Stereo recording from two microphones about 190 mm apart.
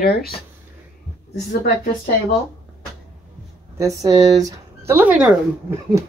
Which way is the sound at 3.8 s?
20° right (ahead or behind).